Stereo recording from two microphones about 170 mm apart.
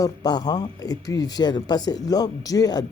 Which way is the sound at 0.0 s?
25° left (ahead or behind).